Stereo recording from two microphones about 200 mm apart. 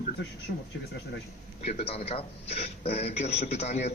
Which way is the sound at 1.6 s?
35° left (ahead or behind).